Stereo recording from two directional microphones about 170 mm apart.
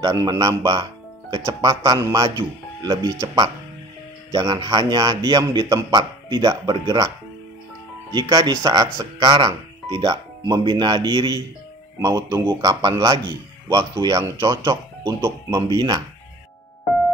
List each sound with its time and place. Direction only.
0.0 s speech: 20° right (ahead or behind)
8.1 s speech: 25° right (ahead or behind)